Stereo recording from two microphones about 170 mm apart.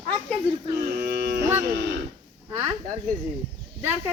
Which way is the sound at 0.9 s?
70° right (ahead or behind).